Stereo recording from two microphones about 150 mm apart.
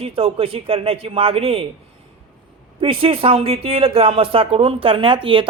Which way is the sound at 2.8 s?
40° right (ahead or behind).